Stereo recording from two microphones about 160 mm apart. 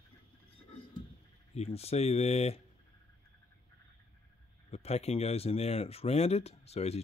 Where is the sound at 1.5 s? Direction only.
40° left (ahead or behind).